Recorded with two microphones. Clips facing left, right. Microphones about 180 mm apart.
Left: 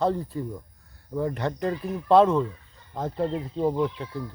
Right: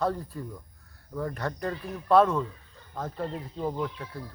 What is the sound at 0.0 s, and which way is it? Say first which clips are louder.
Speech: left 4 dB; 20° left (ahead or behind).